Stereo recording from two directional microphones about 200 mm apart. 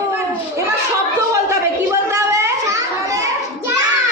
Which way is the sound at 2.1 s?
15° right (ahead or behind).